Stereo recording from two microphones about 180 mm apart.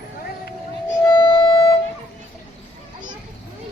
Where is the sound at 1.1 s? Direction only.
25° left (ahead or behind).